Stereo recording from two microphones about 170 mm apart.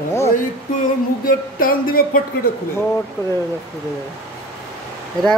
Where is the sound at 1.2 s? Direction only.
55° left (ahead or behind).